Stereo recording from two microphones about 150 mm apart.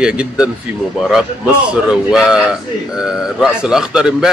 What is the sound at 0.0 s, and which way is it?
A man's voice, 5° right (ahead or behind).